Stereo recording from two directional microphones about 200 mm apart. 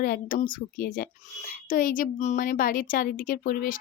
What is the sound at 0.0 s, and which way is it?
Speech, 45° left (ahead or behind).